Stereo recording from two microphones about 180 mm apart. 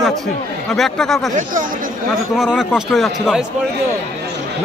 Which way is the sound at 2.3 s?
5° right (ahead or behind).